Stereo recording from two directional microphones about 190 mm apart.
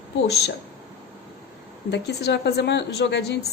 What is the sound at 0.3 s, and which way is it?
Speech, 60° left (ahead or behind).